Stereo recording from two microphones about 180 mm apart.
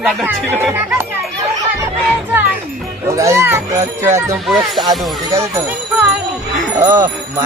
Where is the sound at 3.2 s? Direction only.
15° right (ahead or behind).